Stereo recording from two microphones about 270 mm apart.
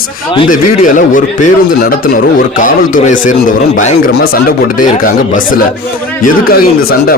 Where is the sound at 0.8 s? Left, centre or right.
Left.